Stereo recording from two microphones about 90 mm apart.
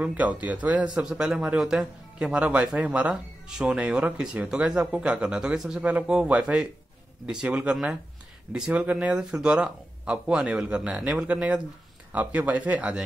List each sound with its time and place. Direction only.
0.0 s speech: 15° right (ahead or behind)